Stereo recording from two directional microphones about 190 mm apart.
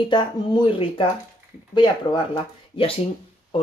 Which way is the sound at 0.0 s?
25° left (ahead or behind).